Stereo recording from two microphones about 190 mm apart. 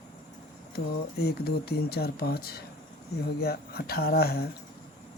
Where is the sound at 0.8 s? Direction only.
60° left (ahead or behind).